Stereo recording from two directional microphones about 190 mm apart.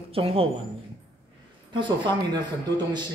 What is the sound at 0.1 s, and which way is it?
Speech, 30° right (ahead or behind).